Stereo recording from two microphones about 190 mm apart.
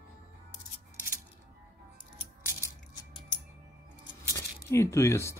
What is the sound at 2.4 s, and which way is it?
Coin, 10° right (ahead or behind).